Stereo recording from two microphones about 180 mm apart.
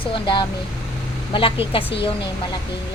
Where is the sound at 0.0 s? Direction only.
25° left (ahead or behind).